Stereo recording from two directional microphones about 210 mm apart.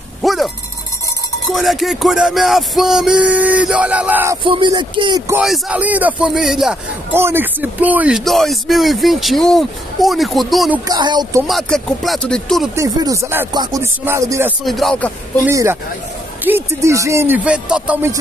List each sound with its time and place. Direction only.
0.2 s dog: centre (ahead or behind)
1.4 s a man's voice: centre (ahead or behind)
4.5 s speech: 20° right (ahead or behind)
5.3 s a man's voice: 5° right (ahead or behind)
10.9 s speech: 20° right (ahead or behind)
11.4 s a man's voice: centre (ahead or behind)
12.7 s speech: 15° right (ahead or behind)
14.6 s a man's voice: centre (ahead or behind)
15.4 s speech: 10° right (ahead or behind)